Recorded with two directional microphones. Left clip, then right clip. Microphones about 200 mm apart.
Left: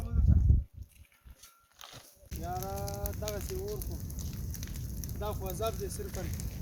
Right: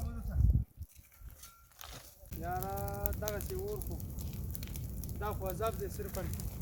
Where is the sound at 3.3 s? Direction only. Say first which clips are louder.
Left 2 dB; 55° right (ahead or behind).